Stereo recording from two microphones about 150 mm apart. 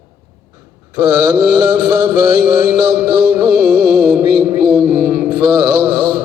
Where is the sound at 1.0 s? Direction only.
25° right (ahead or behind).